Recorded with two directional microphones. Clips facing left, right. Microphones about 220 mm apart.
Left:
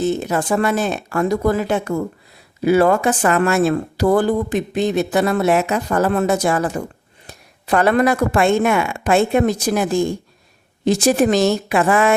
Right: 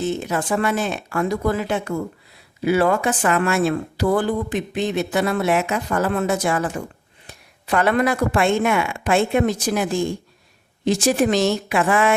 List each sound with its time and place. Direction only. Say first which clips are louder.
0.0 s speech: left 4 dB; 40° left (ahead or behind)